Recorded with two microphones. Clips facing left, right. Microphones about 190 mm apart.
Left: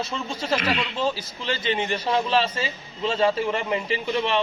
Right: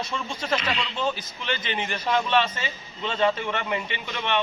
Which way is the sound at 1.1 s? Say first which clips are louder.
Left 2 dB; 25° left (ahead or behind).